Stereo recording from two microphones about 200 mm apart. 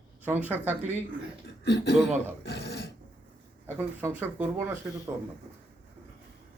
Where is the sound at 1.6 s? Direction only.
60° left (ahead or behind).